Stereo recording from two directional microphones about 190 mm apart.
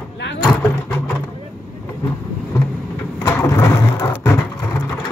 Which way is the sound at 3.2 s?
10° left (ahead or behind).